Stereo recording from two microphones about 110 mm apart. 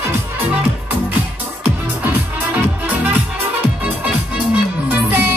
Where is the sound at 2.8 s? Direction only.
15° right (ahead or behind).